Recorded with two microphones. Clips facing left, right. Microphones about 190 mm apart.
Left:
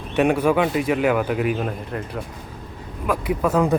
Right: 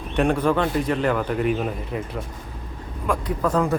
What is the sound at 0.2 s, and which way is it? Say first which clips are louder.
A man's voice: left 2 dB; 10° left (ahead or behind).